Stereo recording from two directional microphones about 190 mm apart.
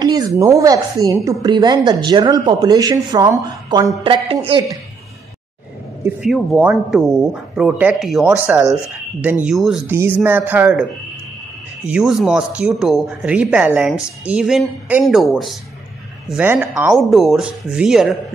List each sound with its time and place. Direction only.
0.0 s a woman's voice: 20° right (ahead or behind)
6.0 s speech: centre (ahead or behind)